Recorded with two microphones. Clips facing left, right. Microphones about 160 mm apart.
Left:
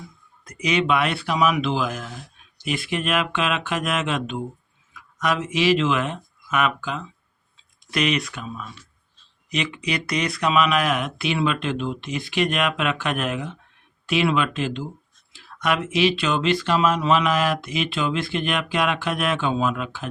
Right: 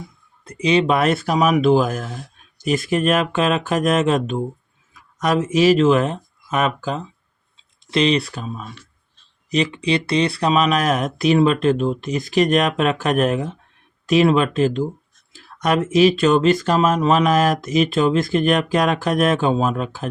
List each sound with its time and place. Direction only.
0.4 s speech: 30° right (ahead or behind)
7.5 s speech: 25° right (ahead or behind)